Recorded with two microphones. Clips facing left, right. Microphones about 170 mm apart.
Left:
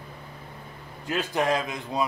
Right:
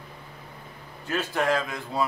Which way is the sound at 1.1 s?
20° left (ahead or behind).